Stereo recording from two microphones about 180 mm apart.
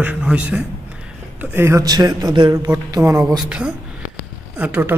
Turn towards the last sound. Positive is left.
turn(degrees=-10)  # may be behind; listen again after turning